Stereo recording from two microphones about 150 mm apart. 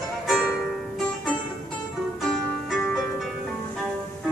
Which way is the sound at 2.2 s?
Centre (ahead or behind).